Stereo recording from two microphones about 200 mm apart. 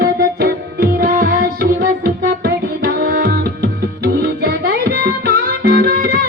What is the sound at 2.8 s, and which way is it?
Tabla, 45° right (ahead or behind).